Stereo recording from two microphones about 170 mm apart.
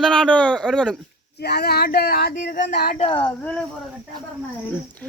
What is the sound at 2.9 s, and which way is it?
Speech, 35° left (ahead or behind).